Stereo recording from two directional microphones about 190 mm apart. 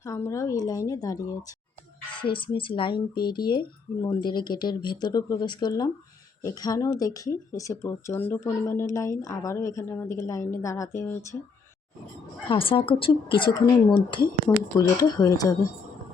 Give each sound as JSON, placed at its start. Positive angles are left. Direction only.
{"t": 0.0, "sound": "speech", "side_deg": 15}
{"t": 12.5, "sound": "speech", "side_deg": 30}